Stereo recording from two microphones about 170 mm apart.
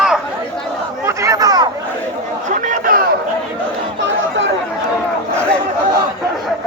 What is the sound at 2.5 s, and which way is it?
Chatter, 50° right (ahead or behind).